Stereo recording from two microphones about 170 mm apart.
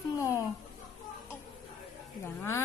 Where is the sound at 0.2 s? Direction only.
15° left (ahead or behind).